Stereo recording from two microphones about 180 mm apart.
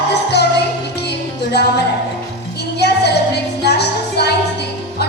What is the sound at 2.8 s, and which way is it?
Music, 65° left (ahead or behind).